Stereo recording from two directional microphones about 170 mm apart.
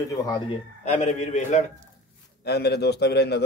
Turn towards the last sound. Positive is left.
turn(degrees=75)  # may be behind; listen again after turning